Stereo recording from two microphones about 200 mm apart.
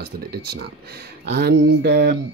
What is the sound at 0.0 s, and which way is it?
Speech, 55° right (ahead or behind).